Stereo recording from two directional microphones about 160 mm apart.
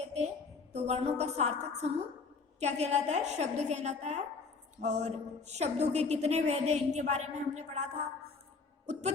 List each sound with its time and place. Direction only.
0.0 s a sound: 45° right (ahead or behind)
0.7 s a woman's voice: 40° right (ahead or behind)
8.9 s a woman's voice: 45° right (ahead or behind)